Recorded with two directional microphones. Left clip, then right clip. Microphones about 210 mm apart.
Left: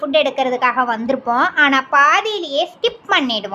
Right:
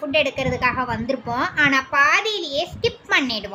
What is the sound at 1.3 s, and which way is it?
A woman's voice, 15° right (ahead or behind).